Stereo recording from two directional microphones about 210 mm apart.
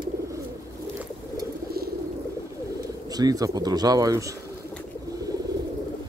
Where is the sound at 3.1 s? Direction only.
15° right (ahead or behind).